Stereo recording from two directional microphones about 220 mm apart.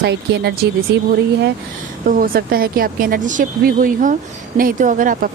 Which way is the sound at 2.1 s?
40° right (ahead or behind).